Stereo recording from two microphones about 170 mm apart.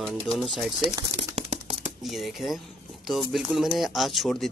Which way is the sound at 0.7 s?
35° right (ahead or behind).